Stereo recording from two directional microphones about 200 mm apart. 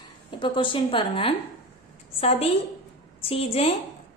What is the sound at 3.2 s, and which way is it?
Speech, 30° left (ahead or behind).